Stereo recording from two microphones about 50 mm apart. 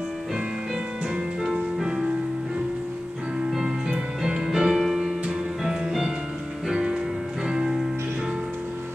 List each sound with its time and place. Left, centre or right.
1.4 s music: centre
3.3 s music: centre